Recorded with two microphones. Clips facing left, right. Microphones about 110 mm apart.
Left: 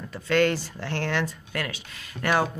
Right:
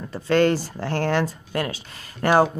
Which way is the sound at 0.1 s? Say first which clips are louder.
Right 4 dB; 35° right (ahead or behind).